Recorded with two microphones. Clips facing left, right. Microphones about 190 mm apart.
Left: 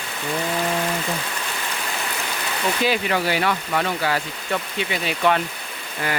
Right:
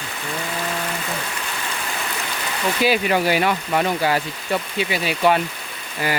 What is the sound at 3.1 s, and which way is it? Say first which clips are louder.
Speech: right 3 dB; 15° right (ahead or behind).